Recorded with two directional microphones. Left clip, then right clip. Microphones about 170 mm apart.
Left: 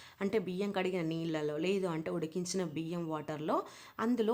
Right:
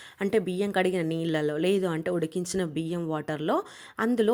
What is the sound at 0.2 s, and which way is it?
Speech, 30° right (ahead or behind).